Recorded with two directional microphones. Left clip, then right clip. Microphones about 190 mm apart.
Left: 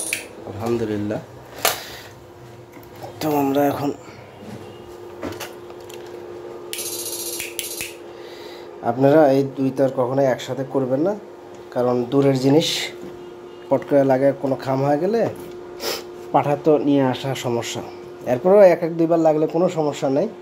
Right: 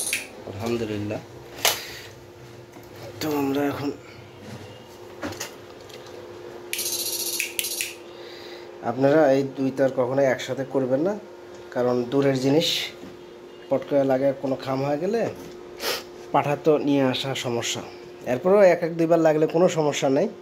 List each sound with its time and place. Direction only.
0.6 s speech: 15° left (ahead or behind)
3.2 s speech: 15° left (ahead or behind)
8.8 s speech: 15° left (ahead or behind)
15.8 s speech: 5° left (ahead or behind)
18.9 s a man's voice: 5° right (ahead or behind)